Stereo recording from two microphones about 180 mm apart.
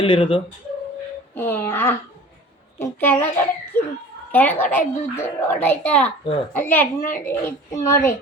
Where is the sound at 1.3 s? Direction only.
10° left (ahead or behind).